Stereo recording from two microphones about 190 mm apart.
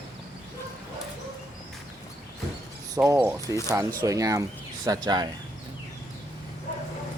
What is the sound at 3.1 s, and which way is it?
Speech, 15° right (ahead or behind).